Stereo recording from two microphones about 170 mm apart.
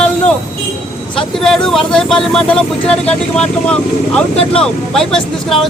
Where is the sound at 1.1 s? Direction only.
5° left (ahead or behind).